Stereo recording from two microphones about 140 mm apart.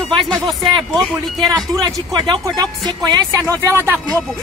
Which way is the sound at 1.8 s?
30° right (ahead or behind).